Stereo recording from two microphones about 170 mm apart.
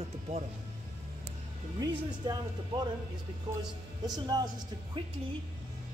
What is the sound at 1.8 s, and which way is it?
Speech, 25° right (ahead or behind).